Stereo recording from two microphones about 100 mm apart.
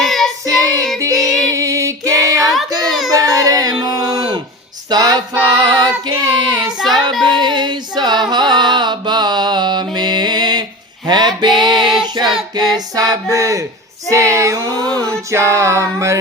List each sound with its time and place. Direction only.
0.0 s child singing: centre (ahead or behind)
0.9 s music: 35° right (ahead or behind)
2.6 s a sound: 40° right (ahead or behind)
4.9 s child singing: 45° right (ahead or behind)
6.7 s child singing: centre (ahead or behind)
7.3 s a sound: 50° right (ahead or behind)
8.3 s mantra: 45° right (ahead or behind)
11.6 s child singing: 45° right (ahead or behind)
12.5 s a sound: 45° right (ahead or behind)